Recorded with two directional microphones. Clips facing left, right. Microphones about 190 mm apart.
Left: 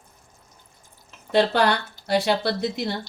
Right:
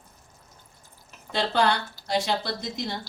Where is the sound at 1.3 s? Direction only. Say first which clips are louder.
Left 4 dB; 65° left (ahead or behind).